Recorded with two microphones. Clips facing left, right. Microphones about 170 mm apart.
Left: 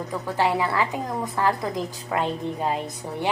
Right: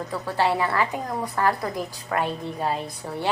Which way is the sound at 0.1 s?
15° left (ahead or behind).